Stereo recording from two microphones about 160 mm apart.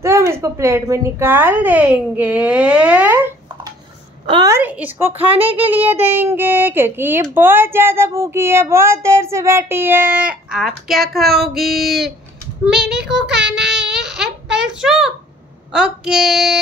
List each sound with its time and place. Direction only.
0.0 s speech: 15° right (ahead or behind)
4.5 s speech: 10° right (ahead or behind)
5.1 s speech: 35° right (ahead or behind)
5.6 s speech: 10° right (ahead or behind)
12.6 s child singing: 5° right (ahead or behind)
13.6 s a sound: 5° right (ahead or behind)
15.7 s child singing: 5° right (ahead or behind)